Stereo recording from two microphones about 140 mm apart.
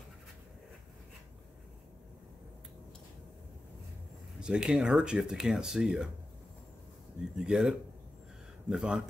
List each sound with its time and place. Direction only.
4.4 s speech: 5° right (ahead or behind)
7.3 s speech: 5° right (ahead or behind)